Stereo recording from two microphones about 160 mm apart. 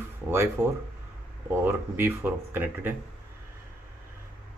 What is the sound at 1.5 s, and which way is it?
Speech, 15° right (ahead or behind).